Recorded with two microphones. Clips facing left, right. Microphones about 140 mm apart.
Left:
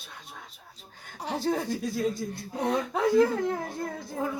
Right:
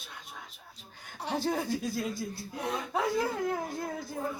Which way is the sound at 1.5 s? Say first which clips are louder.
Left 4 dB; centre (ahead or behind).